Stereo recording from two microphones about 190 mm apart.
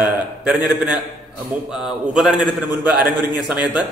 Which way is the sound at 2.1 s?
5° right (ahead or behind).